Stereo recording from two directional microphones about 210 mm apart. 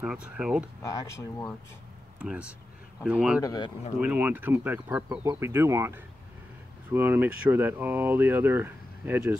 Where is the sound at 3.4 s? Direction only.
20° left (ahead or behind).